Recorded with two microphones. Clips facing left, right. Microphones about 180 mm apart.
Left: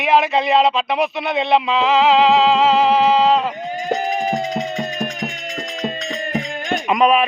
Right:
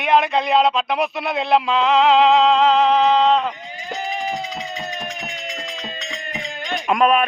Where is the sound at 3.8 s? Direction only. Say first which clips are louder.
Left 5 dB; 45° left (ahead or behind).